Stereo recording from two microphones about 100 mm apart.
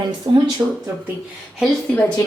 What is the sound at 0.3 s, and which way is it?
Speech, 55° right (ahead or behind).